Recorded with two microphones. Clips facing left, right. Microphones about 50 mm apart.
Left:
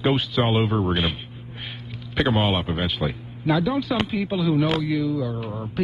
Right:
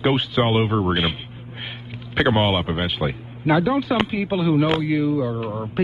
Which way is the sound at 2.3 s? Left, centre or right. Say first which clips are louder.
Right 3 dB; centre.